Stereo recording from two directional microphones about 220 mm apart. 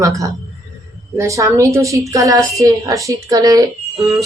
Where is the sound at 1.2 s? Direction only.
15° right (ahead or behind).